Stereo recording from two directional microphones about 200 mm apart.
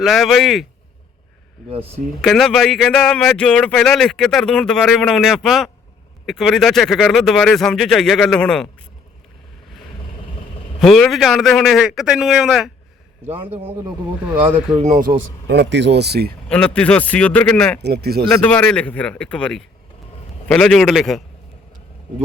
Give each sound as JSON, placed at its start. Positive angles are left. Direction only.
{"t": 0.0, "sound": "speech", "side_deg": 0}
{"t": 2.2, "sound": "speech", "side_deg": 0}
{"t": 10.8, "sound": "speech", "side_deg": 0}
{"t": 13.2, "sound": "a man's voice", "side_deg": -30}
{"t": 14.7, "sound": "speech", "side_deg": -35}
{"t": 15.4, "sound": "speech", "side_deg": -60}
{"t": 16.5, "sound": "speech", "side_deg": 5}
{"t": 17.8, "sound": "speech", "side_deg": -55}
{"t": 18.3, "sound": "speech", "side_deg": 5}